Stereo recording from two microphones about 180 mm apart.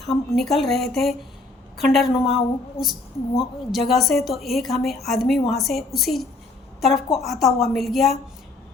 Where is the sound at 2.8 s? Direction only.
30° left (ahead or behind).